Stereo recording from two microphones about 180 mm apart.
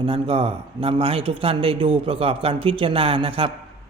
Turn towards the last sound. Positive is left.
turn(degrees=-30)  # may be behind; listen again after turning